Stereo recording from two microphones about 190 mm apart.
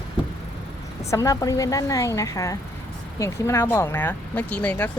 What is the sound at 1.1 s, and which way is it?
Speech, 15° left (ahead or behind).